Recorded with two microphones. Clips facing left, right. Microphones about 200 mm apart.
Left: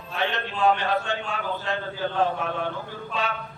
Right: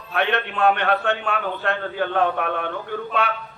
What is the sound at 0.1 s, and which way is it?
A man's voice, 65° right (ahead or behind).